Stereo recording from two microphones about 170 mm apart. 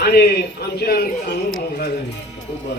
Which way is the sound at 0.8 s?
70° left (ahead or behind).